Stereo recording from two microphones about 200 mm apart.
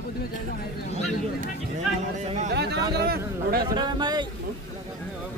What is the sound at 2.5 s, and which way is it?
Speech, 55° right (ahead or behind).